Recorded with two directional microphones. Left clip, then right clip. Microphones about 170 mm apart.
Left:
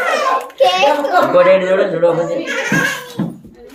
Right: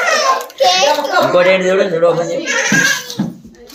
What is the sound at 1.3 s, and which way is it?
Speech, 45° right (ahead or behind).